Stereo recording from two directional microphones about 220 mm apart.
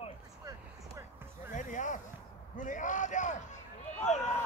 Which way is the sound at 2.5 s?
35° left (ahead or behind).